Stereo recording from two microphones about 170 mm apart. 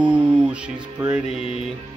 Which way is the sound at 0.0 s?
5° right (ahead or behind).